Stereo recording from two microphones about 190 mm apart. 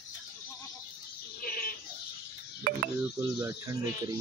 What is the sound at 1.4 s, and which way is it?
Goat, 50° left (ahead or behind).